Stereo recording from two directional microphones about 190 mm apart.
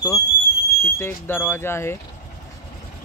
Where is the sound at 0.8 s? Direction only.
10° left (ahead or behind).